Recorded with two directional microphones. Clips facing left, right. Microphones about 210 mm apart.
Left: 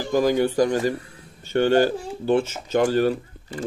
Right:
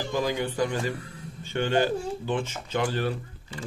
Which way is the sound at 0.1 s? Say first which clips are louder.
Left 10 dB; 45° left (ahead or behind).